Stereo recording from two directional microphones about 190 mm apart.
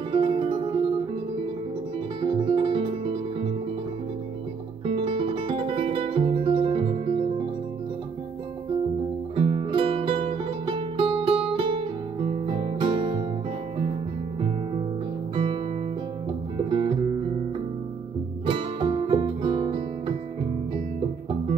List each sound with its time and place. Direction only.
0.1 s music: 25° right (ahead or behind)
2.2 s music: 25° right (ahead or behind)
4.8 s music: 25° right (ahead or behind)
9.3 s music: 30° right (ahead or behind)
14.4 s music: 30° right (ahead or behind)
15.3 s guitar: 30° right (ahead or behind)
16.5 s music: 30° right (ahead or behind)
18.4 s music: 30° right (ahead or behind)